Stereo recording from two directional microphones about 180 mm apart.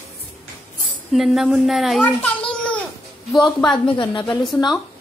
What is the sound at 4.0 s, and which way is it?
Speech, 25° left (ahead or behind).